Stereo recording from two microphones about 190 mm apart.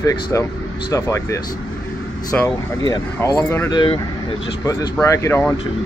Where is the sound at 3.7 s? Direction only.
25° left (ahead or behind).